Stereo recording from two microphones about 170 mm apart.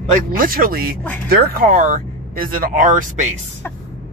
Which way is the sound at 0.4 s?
55° right (ahead or behind).